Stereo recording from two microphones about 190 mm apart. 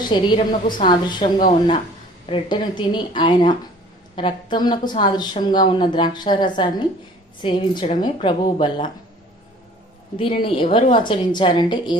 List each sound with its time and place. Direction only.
0.1 s a woman's voice: 25° left (ahead or behind)
10.1 s a woman's voice: 30° left (ahead or behind)